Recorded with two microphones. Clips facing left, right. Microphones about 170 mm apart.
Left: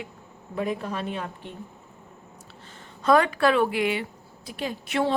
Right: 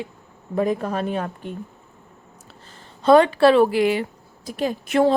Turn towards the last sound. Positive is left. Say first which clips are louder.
# right 7 dB
turn(degrees=-45)  # may be behind; listen again after turning